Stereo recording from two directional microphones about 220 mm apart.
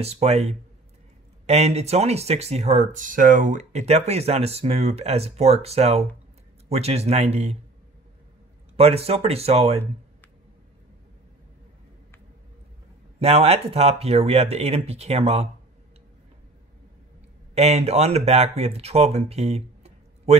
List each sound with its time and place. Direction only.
0.0 s speech: 30° right (ahead or behind)
8.7 s speech: 30° right (ahead or behind)
13.2 s speech: 30° right (ahead or behind)
17.6 s speech: 30° right (ahead or behind)